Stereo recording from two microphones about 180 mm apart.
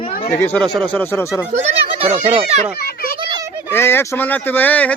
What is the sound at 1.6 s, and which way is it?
A child's voice, 35° right (ahead or behind).